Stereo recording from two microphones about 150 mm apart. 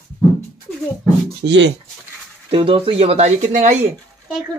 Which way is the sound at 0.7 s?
10° left (ahead or behind).